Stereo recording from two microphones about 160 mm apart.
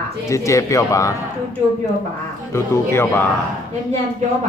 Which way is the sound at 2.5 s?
15° left (ahead or behind).